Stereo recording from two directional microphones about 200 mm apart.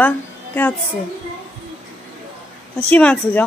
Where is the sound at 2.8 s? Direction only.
5° left (ahead or behind).